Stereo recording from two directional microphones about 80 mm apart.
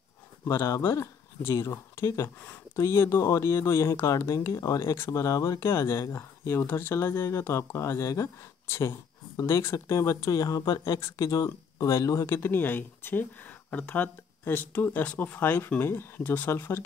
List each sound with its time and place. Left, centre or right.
0.5 s speech: left
12.3 s speech: left